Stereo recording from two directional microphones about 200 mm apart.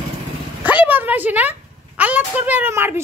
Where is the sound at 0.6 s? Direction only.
10° right (ahead or behind).